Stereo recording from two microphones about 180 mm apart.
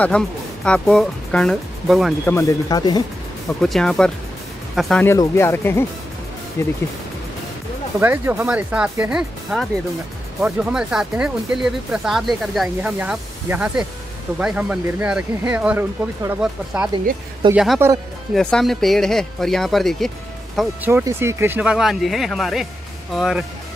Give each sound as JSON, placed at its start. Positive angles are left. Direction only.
{"t": 0.1, "sound": "speech", "side_deg": 5}
{"t": 2.2, "sound": "speech", "side_deg": 15}
{"t": 3.6, "sound": "speech", "side_deg": 0}
{"t": 5.0, "sound": "speech", "side_deg": 15}
{"t": 8.0, "sound": "speech", "side_deg": -10}
{"t": 17.4, "sound": "speech", "side_deg": -25}
{"t": 17.8, "sound": "speech", "side_deg": -15}
{"t": 18.3, "sound": "speech", "side_deg": 5}
{"t": 20.5, "sound": "speech", "side_deg": -10}